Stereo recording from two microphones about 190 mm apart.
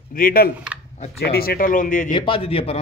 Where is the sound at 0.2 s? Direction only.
50° left (ahead or behind).